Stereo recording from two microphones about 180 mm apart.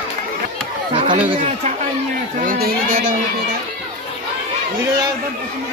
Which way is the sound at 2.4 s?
50° right (ahead or behind).